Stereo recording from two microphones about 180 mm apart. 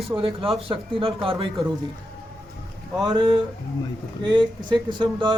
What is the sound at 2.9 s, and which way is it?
Speech, 25° right (ahead or behind).